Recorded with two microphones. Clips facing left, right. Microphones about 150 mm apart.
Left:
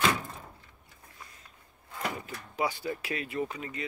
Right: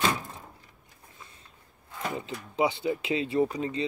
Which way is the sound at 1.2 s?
25° right (ahead or behind).